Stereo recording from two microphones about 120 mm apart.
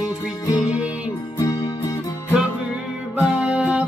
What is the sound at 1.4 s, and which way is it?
Music, 30° left (ahead or behind).